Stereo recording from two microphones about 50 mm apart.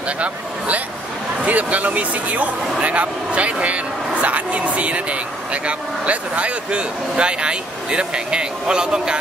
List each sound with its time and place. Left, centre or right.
0.2 s speech: right